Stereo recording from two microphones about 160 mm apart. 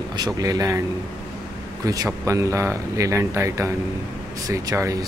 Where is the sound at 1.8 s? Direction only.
20° right (ahead or behind).